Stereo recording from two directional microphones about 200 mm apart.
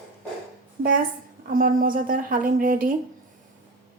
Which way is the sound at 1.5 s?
45° right (ahead or behind).